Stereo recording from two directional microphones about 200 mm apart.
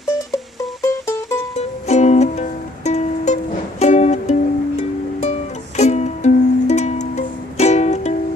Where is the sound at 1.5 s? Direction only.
35° left (ahead or behind).